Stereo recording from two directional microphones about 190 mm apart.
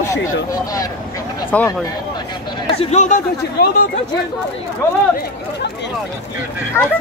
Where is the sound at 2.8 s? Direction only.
40° left (ahead or behind).